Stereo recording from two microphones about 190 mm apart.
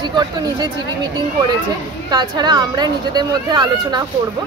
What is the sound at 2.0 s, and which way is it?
Speech, 20° right (ahead or behind).